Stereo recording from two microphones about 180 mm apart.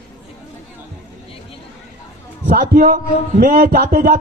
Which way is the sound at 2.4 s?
60° right (ahead or behind).